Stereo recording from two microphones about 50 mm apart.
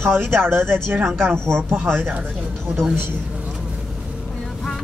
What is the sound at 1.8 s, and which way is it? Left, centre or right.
Speech, right.